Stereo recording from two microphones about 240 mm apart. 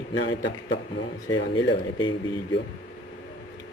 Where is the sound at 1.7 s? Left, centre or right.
Centre.